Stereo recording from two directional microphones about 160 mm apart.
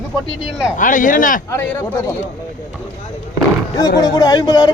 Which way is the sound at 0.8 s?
55° left (ahead or behind).